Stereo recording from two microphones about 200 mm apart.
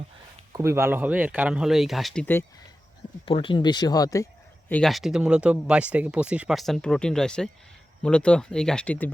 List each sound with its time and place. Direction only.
0.5 s speech: 15° right (ahead or behind); by 2.4 s 5° left (ahead or behind)
3.2 s speech: 25° left (ahead or behind)
4.7 s speech: centre (ahead or behind)